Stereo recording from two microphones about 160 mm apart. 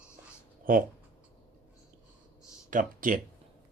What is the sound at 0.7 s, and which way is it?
Speech, 60° right (ahead or behind).